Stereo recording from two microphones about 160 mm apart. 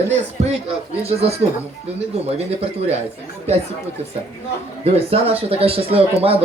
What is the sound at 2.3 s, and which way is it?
Speech, 40° right (ahead or behind).